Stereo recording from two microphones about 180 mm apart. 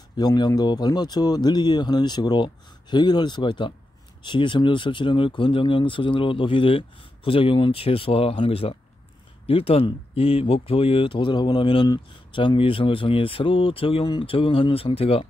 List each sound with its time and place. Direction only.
0.2 s speech: 20° left (ahead or behind)